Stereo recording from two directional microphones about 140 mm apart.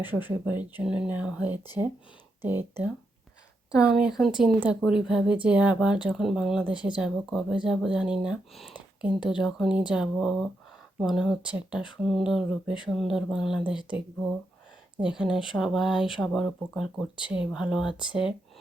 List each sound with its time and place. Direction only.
0.0 s speech: 15° right (ahead or behind)
3.7 s speech: 5° right (ahead or behind)
15.0 s speech: 5° right (ahead or behind)